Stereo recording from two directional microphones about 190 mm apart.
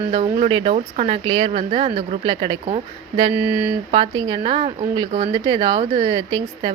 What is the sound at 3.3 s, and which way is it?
Speech, 10° right (ahead or behind).